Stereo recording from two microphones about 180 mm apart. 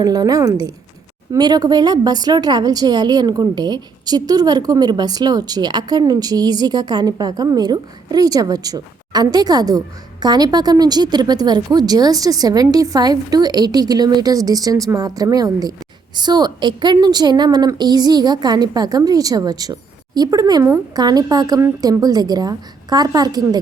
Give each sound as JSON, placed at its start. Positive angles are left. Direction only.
{"t": 0.0, "sound": "a woman's voice", "side_deg": -20}